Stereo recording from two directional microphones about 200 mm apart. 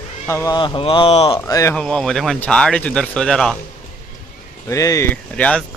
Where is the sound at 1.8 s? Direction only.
5° left (ahead or behind).